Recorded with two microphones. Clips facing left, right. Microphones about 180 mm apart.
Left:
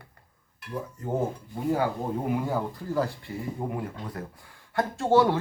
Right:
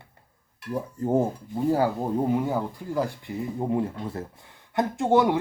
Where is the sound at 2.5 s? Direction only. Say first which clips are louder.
Right 1 dB; 15° right (ahead or behind).